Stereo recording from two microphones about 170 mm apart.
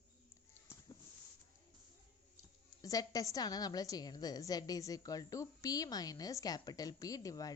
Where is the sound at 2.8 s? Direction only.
20° left (ahead or behind).